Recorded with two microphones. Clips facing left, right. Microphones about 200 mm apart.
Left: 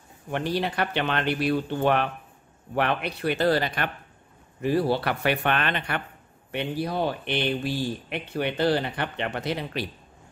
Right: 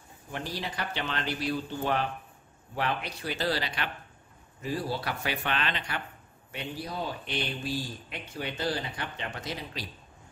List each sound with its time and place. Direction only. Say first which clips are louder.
0.3 s speech: left 9 dB; 65° left (ahead or behind)
4.6 s speech: left 9 dB; 65° left (ahead or behind)